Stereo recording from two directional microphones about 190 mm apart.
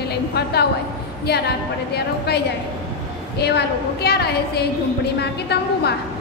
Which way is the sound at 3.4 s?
55° left (ahead or behind).